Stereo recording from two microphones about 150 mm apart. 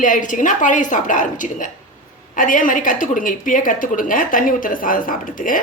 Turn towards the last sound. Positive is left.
turn(degrees=65)  # may be behind; listen again after turning